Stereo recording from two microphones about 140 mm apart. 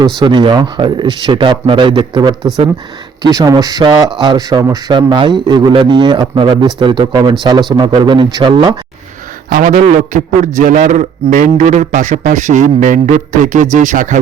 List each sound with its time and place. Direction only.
0.2 s a man's voice: 30° right (ahead or behind)
9.5 s a man's voice: 75° right (ahead or behind)
9.8 s a man's voice: 60° right (ahead or behind)